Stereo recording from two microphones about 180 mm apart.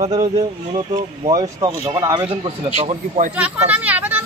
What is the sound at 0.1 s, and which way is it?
Speech, 25° right (ahead or behind).